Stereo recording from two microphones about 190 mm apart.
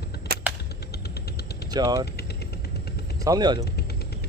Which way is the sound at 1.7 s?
20° right (ahead or behind).